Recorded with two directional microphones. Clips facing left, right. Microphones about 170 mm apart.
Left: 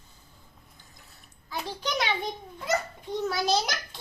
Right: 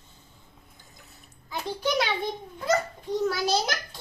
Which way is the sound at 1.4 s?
15° right (ahead or behind).